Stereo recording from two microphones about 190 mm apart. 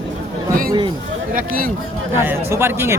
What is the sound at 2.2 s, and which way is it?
Speech, 10° right (ahead or behind).